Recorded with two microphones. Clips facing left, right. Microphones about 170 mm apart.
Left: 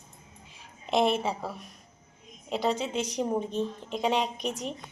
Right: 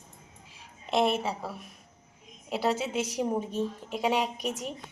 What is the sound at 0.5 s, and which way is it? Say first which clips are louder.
A woman's voice: left 1 dB; centre (ahead or behind).